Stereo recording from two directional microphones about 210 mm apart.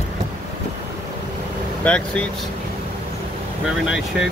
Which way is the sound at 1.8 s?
5° left (ahead or behind).